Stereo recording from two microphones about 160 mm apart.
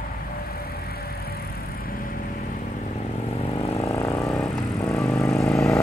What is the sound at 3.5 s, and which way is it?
Vehicle, 40° left (ahead or behind).